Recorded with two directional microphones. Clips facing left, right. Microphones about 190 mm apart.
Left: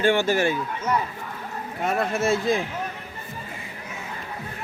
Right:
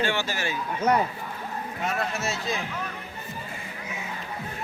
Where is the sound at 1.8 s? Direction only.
50° left (ahead or behind).